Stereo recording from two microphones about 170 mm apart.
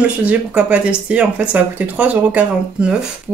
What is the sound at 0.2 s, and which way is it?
Speech, 10° right (ahead or behind).